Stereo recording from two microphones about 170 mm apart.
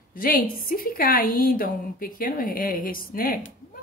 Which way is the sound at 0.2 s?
60° left (ahead or behind).